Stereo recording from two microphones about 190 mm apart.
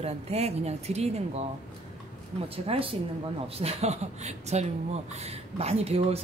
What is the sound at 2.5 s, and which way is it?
Speech, 30° right (ahead or behind).